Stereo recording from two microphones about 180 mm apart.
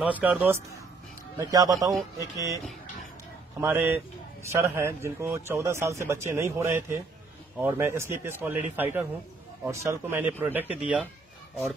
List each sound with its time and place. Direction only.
0.0 s speech: 10° right (ahead or behind)
1.4 s speech: 20° right (ahead or behind)
3.6 s speech: 10° right (ahead or behind)